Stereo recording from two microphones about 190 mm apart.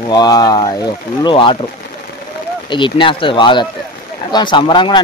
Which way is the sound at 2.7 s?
25° left (ahead or behind).